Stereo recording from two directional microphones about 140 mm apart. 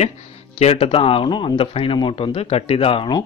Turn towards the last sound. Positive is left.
turn(degrees=40)  # may be behind; listen again after turning